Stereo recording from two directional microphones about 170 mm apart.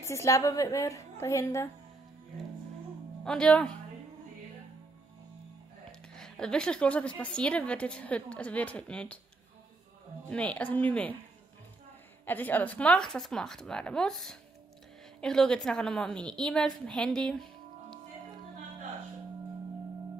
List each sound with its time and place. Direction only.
0.0 s a woman's voice: 20° left (ahead or behind)
3.3 s a woman's voice: 5° left (ahead or behind)
5.9 s a woman's voice: 5° left (ahead or behind)
10.3 s a woman's voice: 10° left (ahead or behind)
12.3 s a woman's voice: 10° left (ahead or behind)